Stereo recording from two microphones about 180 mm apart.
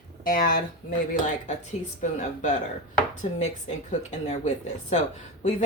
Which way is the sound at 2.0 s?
45° left (ahead or behind).